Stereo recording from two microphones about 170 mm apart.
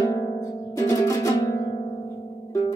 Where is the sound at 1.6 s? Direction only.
35° left (ahead or behind).